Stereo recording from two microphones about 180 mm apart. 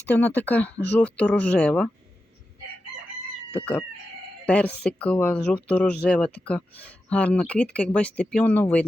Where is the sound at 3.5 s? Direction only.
5° left (ahead or behind).